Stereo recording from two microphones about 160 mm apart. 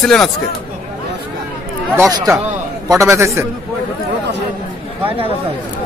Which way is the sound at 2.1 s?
25° right (ahead or behind).